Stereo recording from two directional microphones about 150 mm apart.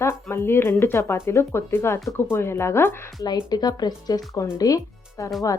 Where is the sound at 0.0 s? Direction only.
15° left (ahead or behind).